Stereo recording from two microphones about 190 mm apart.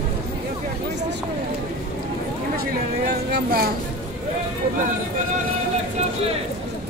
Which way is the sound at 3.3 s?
55° right (ahead or behind).